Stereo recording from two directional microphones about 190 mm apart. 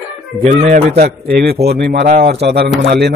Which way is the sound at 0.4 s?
45° right (ahead or behind).